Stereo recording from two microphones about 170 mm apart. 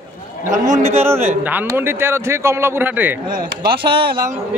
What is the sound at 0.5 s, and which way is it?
Speech, 45° right (ahead or behind).